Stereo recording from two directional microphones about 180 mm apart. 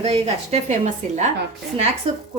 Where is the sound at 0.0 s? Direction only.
35° right (ahead or behind).